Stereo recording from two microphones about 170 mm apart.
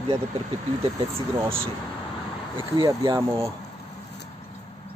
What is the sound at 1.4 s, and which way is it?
Speech, 15° right (ahead or behind).